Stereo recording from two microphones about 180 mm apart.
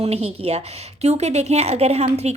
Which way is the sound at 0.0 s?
35° right (ahead or behind).